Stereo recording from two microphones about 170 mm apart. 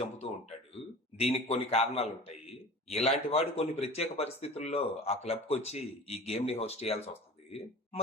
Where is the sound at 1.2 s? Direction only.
35° left (ahead or behind).